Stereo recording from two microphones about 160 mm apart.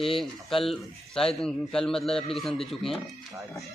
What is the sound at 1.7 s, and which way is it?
A man's voice, 5° left (ahead or behind).